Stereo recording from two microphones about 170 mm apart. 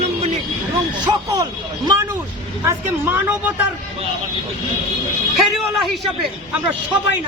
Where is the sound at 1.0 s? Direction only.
25° right (ahead or behind).